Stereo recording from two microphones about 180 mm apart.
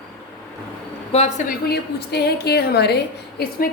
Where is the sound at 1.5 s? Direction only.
60° left (ahead or behind).